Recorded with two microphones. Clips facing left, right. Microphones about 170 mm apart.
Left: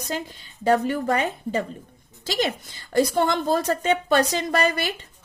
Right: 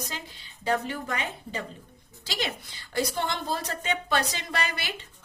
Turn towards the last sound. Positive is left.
turn(degrees=45)  # may be behind; listen again after turning